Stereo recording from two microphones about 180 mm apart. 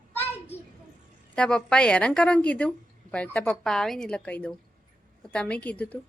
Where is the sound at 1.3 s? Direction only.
5° left (ahead or behind).